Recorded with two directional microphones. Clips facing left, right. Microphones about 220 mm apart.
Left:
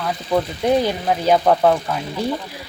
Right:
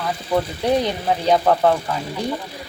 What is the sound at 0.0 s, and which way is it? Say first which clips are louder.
Speech: left 1 dB; centre (ahead or behind).